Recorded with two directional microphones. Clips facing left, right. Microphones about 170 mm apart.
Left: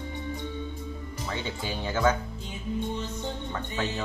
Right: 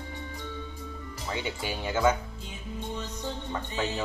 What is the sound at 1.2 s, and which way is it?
Speech, 10° right (ahead or behind).